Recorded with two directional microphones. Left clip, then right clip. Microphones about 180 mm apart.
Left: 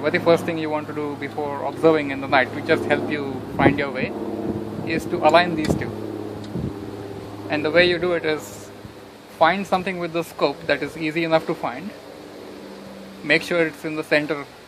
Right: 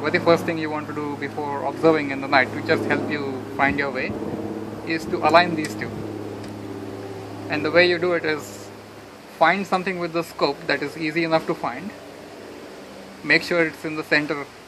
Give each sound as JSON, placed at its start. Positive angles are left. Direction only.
{"t": 0.0, "sound": "speech", "side_deg": 30}
{"t": 7.4, "sound": "speech", "side_deg": 35}
{"t": 9.4, "sound": "speech", "side_deg": 35}
{"t": 13.3, "sound": "speech", "side_deg": 35}